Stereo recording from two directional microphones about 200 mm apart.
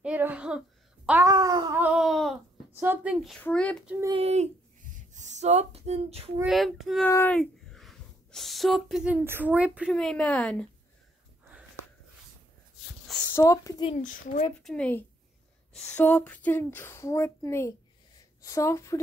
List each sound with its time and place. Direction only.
0.0 s a sound: 5° right (ahead or behind)
1.2 s babbling: 20° right (ahead or behind)
1.8 s a sound: 5° right (ahead or behind)
2.7 s speech: 10° right (ahead or behind)
3.3 s child singing: 5° left (ahead or behind)
4.1 s speech: 30° right (ahead or behind)
6.4 s child singing: centre (ahead or behind)
7.1 s speech: 15° left (ahead or behind)
7.3 s speech: centre (ahead or behind)
13.3 s speech: 15° left (ahead or behind)
14.0 s speech: 40° left (ahead or behind)
14.6 s child singing: 5° left (ahead or behind)
15.7 s speech: 5° left (ahead or behind)